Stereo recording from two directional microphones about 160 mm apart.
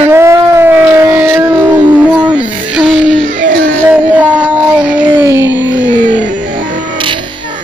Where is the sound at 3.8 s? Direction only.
10° right (ahead or behind).